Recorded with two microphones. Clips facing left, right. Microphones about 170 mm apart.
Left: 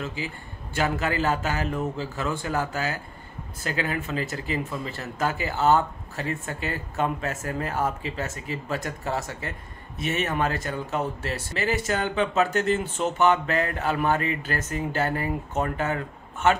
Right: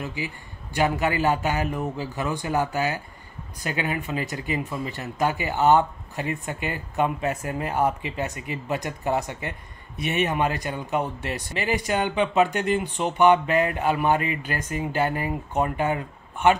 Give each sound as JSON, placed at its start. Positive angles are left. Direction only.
{"t": 0.0, "sound": "speech", "side_deg": -15}